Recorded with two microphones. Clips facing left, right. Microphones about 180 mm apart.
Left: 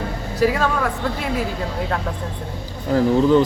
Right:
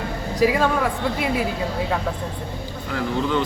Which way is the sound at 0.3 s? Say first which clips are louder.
Even; 10° right (ahead or behind).